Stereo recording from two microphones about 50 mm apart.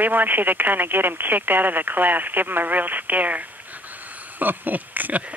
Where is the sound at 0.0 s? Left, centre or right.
Right.